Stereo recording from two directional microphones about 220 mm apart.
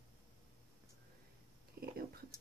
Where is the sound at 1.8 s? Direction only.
40° right (ahead or behind).